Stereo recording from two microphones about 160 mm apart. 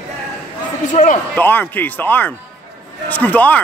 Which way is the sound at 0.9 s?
50° left (ahead or behind).